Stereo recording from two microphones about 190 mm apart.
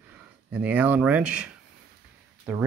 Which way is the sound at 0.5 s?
5° right (ahead or behind).